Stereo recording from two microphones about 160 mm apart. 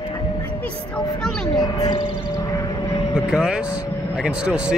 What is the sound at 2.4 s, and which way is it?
Vehicle, 20° left (ahead or behind).